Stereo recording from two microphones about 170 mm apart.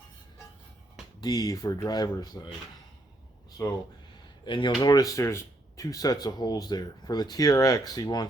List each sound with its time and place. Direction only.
1.2 s speech: 25° left (ahead or behind)
3.6 s speech: 20° left (ahead or behind)